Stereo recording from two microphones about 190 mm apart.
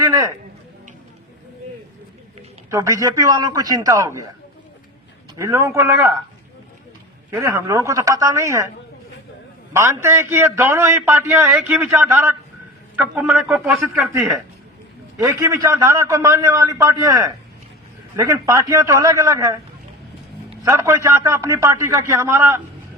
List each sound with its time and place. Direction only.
0.0 s a sound: 20° right (ahead or behind)
2.6 s a man's voice: 15° right (ahead or behind)
5.4 s a man's voice: 15° right (ahead or behind)
7.3 s a man's voice: 10° right (ahead or behind)
9.7 s a man's voice: 15° right (ahead or behind)
15.2 s a man's voice: 15° right (ahead or behind)
20.6 s a man's voice: 15° right (ahead or behind)